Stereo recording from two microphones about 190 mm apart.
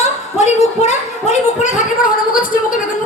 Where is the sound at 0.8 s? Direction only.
35° left (ahead or behind).